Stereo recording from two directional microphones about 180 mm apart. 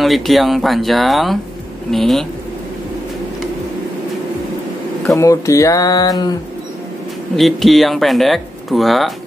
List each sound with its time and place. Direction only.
0.0 s speech: centre (ahead or behind)
5.1 s speech: 20° left (ahead or behind)
7.3 s speech: centre (ahead or behind)